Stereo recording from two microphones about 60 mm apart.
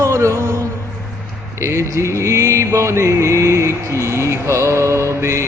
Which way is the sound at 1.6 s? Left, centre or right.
Right.